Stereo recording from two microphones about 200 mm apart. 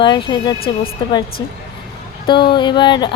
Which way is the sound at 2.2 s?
25° left (ahead or behind).